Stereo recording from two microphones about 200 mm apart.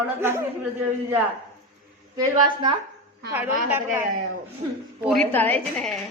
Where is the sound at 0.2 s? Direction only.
10° right (ahead or behind).